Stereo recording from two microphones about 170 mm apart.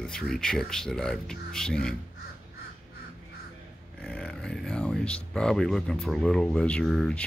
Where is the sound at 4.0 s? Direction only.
5° left (ahead or behind).